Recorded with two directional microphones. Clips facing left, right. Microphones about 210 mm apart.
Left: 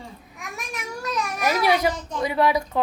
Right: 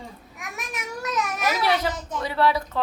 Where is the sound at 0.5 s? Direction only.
Centre (ahead or behind).